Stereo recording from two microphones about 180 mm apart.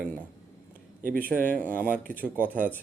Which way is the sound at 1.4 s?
10° left (ahead or behind).